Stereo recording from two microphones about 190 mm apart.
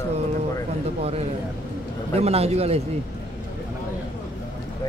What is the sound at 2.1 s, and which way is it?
Speech, 35° right (ahead or behind).